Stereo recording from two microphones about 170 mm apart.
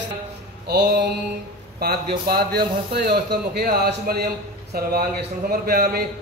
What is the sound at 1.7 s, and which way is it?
A man's voice, 65° right (ahead or behind).